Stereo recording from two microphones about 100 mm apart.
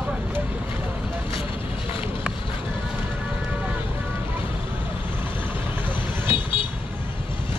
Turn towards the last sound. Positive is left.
turn(degrees=60)  # may be behind; listen again after turning